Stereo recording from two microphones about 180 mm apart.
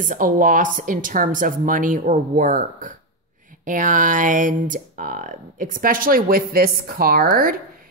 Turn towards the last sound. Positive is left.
turn(degrees=-55)  # may be behind; listen again after turning